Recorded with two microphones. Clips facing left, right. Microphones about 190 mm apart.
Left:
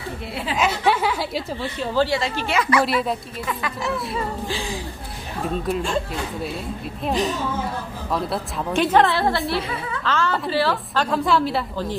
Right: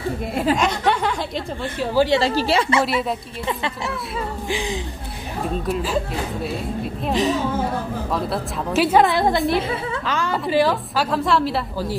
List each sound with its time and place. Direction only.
0.3 s a woman's voice: 45° right (ahead or behind)
0.6 s speech: 5° left (ahead or behind)
2.1 s a woman's voice: 35° right (ahead or behind)
4.5 s a woman's voice: 20° right (ahead or behind)
5.7 s a woman's voice: 5° right (ahead or behind)
7.1 s a woman's voice: centre (ahead or behind)
11.1 s a woman's voice: centre (ahead or behind)